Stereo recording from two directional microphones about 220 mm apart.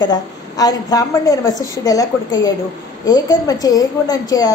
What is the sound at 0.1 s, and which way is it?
A woman's voice, 15° left (ahead or behind).